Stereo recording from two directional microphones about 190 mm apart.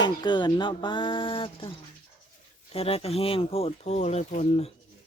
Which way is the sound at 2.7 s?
30° left (ahead or behind).